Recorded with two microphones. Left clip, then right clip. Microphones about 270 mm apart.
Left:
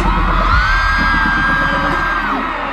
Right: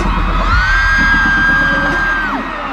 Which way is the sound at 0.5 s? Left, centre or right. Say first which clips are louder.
Right 4 dB; right.